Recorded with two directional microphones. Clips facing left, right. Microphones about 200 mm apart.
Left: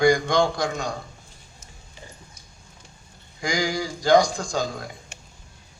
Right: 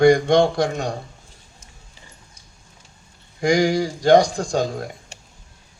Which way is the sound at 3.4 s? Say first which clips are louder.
Right 8 dB; 65° right (ahead or behind).